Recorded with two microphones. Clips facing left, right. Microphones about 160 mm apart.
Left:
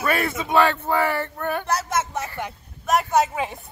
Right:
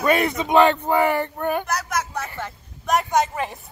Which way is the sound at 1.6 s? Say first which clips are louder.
Left 2 dB; 30° left (ahead or behind).